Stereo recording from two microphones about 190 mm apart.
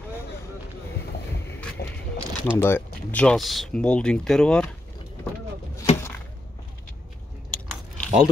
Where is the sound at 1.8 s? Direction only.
55° left (ahead or behind).